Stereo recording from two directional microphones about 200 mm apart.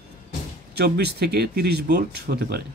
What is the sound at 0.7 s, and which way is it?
Speech, 55° right (ahead or behind).